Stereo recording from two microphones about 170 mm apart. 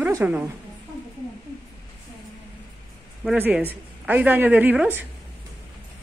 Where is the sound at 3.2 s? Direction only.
5° right (ahead or behind).